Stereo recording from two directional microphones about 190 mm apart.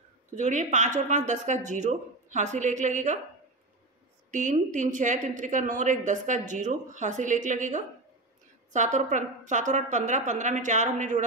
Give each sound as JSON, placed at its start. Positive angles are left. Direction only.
{"t": 0.4, "sound": "a woman's voice", "side_deg": -40}
{"t": 4.3, "sound": "a woman's voice", "side_deg": -40}